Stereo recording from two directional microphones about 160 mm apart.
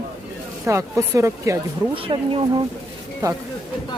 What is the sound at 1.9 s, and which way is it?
Speech, 30° right (ahead or behind).